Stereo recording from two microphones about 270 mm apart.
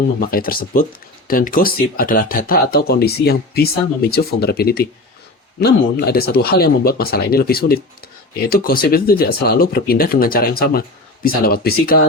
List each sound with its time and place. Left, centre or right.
0.2 s speech: left